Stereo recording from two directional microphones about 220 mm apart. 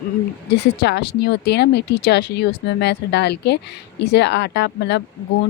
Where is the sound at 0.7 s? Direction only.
50° left (ahead or behind).